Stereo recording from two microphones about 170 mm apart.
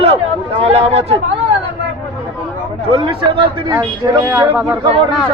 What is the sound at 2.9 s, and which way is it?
Speech, 35° right (ahead or behind).